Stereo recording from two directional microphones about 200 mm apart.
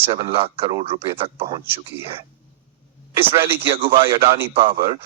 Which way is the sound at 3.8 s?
25° right (ahead or behind).